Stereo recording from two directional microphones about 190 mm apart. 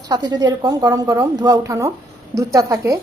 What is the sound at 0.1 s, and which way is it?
A woman's voice, 20° right (ahead or behind).